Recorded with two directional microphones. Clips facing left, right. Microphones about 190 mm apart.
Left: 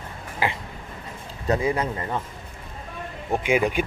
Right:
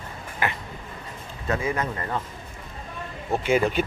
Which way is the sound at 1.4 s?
35° left (ahead or behind).